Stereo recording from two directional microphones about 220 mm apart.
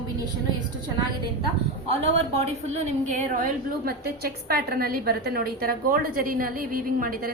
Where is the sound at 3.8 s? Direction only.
45° right (ahead or behind).